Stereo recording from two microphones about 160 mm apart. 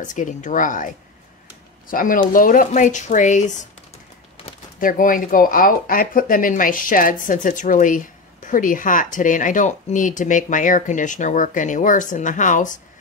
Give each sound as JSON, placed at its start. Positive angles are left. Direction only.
{"t": 0.0, "sound": "speech", "side_deg": 50}
{"t": 1.9, "sound": "speech", "side_deg": 60}
{"t": 4.7, "sound": "speech", "side_deg": 60}